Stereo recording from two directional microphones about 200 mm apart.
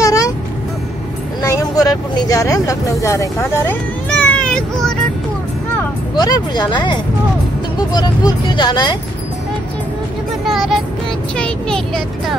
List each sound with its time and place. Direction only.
0.0 s music: 15° left (ahead or behind)
1.4 s speech: 15° left (ahead or behind)
6.1 s speech: 20° left (ahead or behind)
10.4 s music: centre (ahead or behind)
11.3 s speech: 5° left (ahead or behind)